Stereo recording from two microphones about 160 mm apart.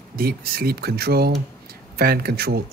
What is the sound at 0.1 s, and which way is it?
Speech, 70° right (ahead or behind).